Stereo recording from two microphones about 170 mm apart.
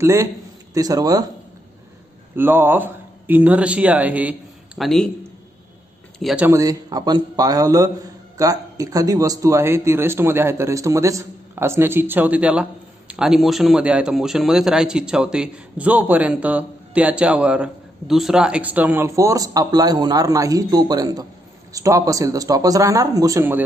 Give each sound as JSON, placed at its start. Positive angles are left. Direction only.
{"t": 0.0, "sound": "a man's voice", "side_deg": -15}
{"t": 2.3, "sound": "a man's voice", "side_deg": -10}
{"t": 6.1, "sound": "speech", "side_deg": 0}
{"t": 6.4, "sound": "a man's voice", "side_deg": -20}